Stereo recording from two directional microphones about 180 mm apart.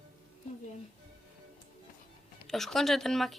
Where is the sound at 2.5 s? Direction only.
Centre (ahead or behind).